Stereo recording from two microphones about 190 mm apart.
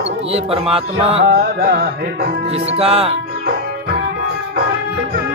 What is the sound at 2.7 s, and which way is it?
Music, 30° right (ahead or behind).